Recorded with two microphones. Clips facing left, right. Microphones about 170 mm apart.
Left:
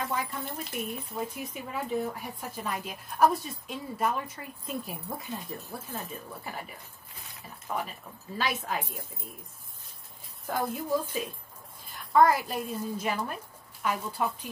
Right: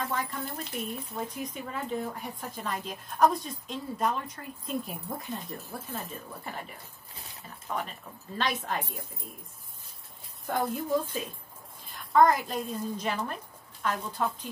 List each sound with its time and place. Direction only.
0.1 s a child's voice: 10° left (ahead or behind)
7.7 s speech: 5° left (ahead or behind)
10.4 s a child's voice: centre (ahead or behind)